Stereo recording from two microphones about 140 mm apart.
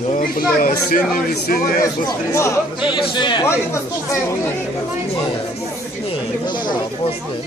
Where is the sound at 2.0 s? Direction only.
20° left (ahead or behind).